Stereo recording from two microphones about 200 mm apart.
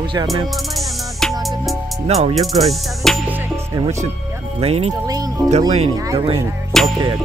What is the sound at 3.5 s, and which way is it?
Music, 15° right (ahead or behind).